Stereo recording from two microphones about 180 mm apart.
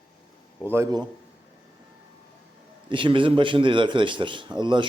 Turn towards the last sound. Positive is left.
turn(degrees=-25)  # may be behind; listen again after turning